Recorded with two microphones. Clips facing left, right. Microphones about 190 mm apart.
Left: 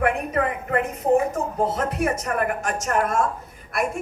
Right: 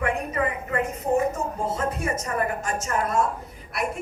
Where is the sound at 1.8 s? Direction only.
70° left (ahead or behind).